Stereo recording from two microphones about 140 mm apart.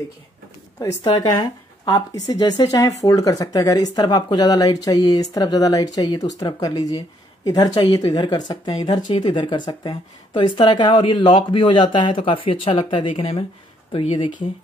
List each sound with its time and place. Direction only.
0.7 s speech: 30° left (ahead or behind)